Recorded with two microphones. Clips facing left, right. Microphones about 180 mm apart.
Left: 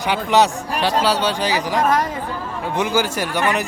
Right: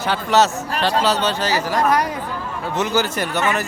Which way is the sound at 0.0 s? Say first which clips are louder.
Left 1 dB; 15° left (ahead or behind).